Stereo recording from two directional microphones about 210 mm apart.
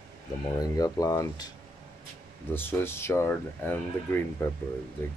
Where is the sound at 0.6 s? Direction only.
15° left (ahead or behind).